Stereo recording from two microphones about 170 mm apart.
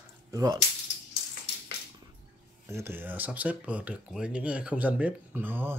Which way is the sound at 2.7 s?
15° right (ahead or behind).